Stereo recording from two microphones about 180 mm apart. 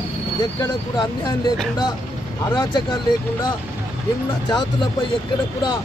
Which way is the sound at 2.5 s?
25° left (ahead or behind).